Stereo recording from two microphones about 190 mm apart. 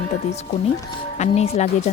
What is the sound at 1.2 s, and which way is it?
Speech, 35° left (ahead or behind).